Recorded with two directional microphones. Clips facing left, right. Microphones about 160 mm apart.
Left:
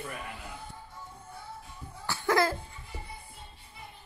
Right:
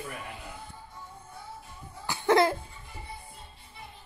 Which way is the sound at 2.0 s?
20° right (ahead or behind).